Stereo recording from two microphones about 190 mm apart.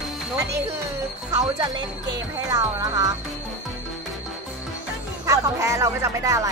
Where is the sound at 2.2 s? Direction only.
20° right (ahead or behind).